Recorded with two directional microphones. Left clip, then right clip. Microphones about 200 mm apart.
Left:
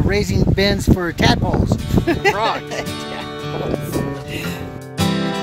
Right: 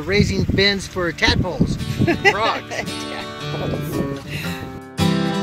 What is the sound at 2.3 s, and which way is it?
Speech, 55° left (ahead or behind).